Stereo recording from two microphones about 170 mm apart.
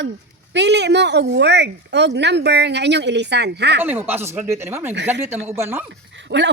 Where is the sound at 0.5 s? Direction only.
90° right.